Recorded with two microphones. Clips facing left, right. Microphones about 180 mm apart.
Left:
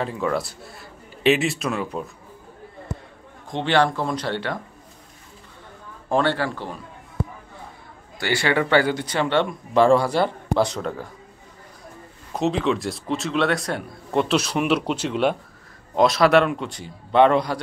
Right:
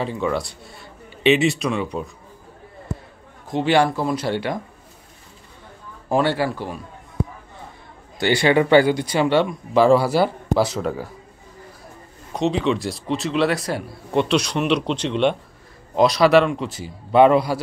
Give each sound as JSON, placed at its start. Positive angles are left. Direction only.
{"t": 0.0, "sound": "speech", "side_deg": 0}
{"t": 3.4, "sound": "speech", "side_deg": -5}
{"t": 6.0, "sound": "speech", "side_deg": -10}
{"t": 8.2, "sound": "speech", "side_deg": -20}
{"t": 12.3, "sound": "speech", "side_deg": 0}